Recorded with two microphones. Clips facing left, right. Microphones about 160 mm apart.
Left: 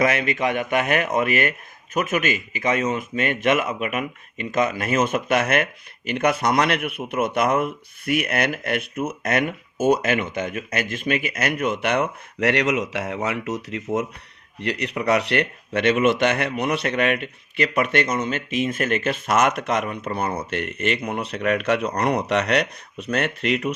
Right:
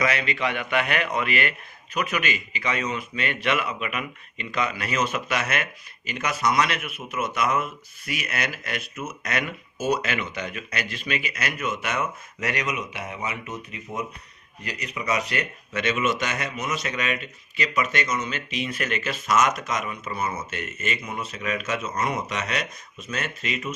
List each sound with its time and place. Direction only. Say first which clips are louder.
0.0 s speech: left 4 dB; 50° left (ahead or behind); by 14.1 s 90° left
14.6 s speech: left 8 dB; 70° left (ahead or behind)